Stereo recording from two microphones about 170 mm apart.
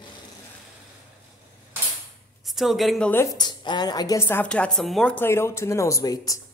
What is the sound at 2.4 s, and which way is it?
Speech, centre (ahead or behind).